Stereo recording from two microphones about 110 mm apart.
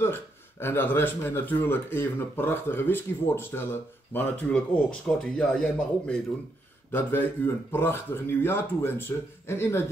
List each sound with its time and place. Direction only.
0.0 s speech: 20° left (ahead or behind)
6.9 s speech: 20° left (ahead or behind)